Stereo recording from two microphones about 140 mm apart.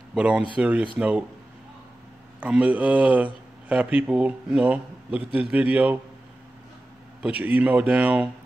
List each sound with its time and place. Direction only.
0.1 s a man's voice: 10° right (ahead or behind)
2.4 s a man's voice: 10° right (ahead or behind)
7.2 s a man's voice: 10° right (ahead or behind)